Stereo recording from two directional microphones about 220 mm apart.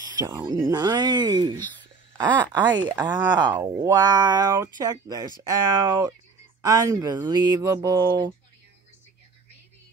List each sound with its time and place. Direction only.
0.2 s speech: 15° right (ahead or behind)